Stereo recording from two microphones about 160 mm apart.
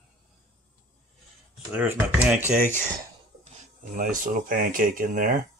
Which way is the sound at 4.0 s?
55° right (ahead or behind).